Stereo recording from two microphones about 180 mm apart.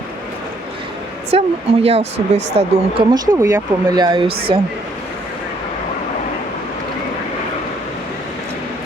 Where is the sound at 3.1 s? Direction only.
20° right (ahead or behind).